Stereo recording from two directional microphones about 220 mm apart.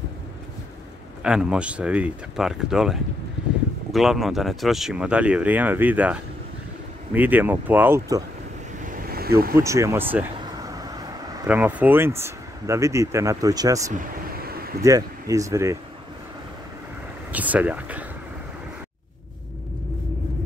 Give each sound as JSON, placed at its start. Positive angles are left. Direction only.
{"t": 1.2, "sound": "speech", "side_deg": -5}
{"t": 7.2, "sound": "speech", "side_deg": -10}
{"t": 8.8, "sound": "vehicle", "side_deg": -40}
{"t": 9.6, "sound": "speech", "side_deg": -15}
{"t": 10.5, "sound": "vehicle", "side_deg": -15}
{"t": 11.4, "sound": "speech", "side_deg": -5}
{"t": 13.9, "sound": "a sound", "side_deg": -45}
{"t": 14.8, "sound": "speech", "side_deg": -15}
{"t": 17.3, "sound": "speech", "side_deg": -5}